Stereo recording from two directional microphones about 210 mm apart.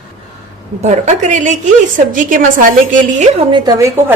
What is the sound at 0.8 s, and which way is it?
A woman's voice, 35° right (ahead or behind).